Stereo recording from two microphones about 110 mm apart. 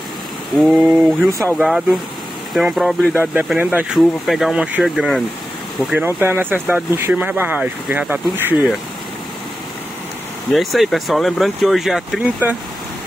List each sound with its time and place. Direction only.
0.6 s speech: 5° right (ahead or behind)
3.5 s speech: 15° right (ahead or behind)
5.9 s speech: 15° right (ahead or behind)
10.5 s speech: centre (ahead or behind)